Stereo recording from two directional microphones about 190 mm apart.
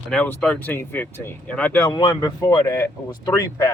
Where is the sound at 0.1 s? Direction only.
5° left (ahead or behind).